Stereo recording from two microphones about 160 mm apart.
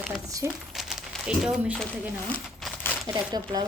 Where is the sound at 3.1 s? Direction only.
20° right (ahead or behind).